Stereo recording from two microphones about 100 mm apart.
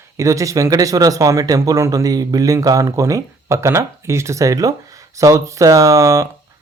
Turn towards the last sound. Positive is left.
turn(degrees=-30)  # may be behind; listen again after turning